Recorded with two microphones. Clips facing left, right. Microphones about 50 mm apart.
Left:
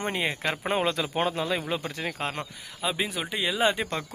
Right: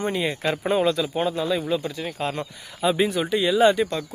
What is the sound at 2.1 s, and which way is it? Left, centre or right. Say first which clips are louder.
Speech: right 4 dB; left.